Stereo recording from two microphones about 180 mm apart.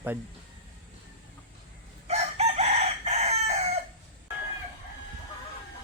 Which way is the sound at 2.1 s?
35° right (ahead or behind).